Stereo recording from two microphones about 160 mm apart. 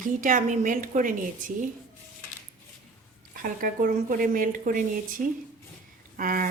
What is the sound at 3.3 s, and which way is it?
Speech, 60° right (ahead or behind).